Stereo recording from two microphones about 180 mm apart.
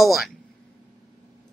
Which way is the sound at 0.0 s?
Centre (ahead or behind).